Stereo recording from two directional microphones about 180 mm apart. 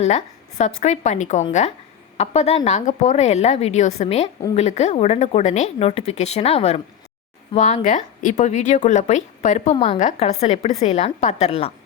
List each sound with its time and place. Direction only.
0.0 s speech: 40° left (ahead or behind)